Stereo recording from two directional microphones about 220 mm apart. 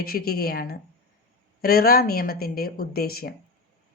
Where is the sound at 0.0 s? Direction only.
40° left (ahead or behind).